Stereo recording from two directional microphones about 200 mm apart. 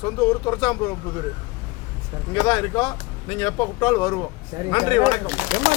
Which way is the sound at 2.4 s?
25° left (ahead or behind).